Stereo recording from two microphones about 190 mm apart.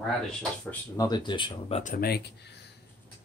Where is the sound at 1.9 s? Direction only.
55° left (ahead or behind).